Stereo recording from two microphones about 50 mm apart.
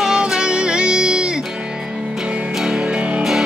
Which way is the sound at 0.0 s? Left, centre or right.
Centre.